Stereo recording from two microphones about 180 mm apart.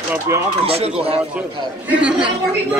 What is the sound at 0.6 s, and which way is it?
Speech, 35° right (ahead or behind).